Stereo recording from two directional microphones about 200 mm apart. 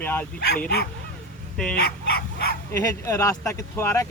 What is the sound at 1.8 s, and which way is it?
Dog, 50° left (ahead or behind).